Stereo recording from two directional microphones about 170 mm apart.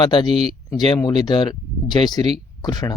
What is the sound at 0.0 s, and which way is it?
Speech, 25° left (ahead or behind).